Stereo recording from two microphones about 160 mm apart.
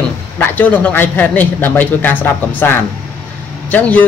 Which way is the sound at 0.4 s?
10° left (ahead or behind).